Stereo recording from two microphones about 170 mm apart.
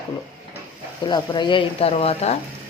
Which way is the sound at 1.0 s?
25° left (ahead or behind).